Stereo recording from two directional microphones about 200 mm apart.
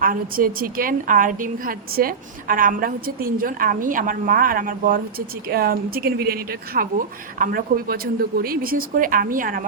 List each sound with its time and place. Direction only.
0.0 s a woman's voice: 45° right (ahead or behind)